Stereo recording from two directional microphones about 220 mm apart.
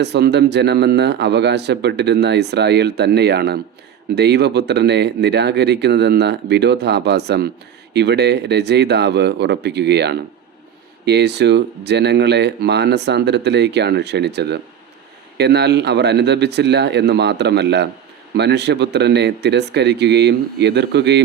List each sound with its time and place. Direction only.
0.0 s speech: 50° right (ahead or behind)